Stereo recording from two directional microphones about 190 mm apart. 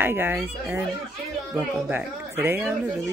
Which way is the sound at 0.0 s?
10° right (ahead or behind).